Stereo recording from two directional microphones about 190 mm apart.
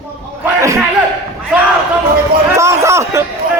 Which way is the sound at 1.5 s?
5° right (ahead or behind).